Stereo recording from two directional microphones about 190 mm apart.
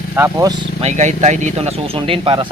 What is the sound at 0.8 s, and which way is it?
Speech, 35° right (ahead or behind).